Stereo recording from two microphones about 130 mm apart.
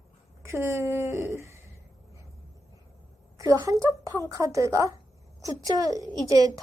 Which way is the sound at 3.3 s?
25° right (ahead or behind).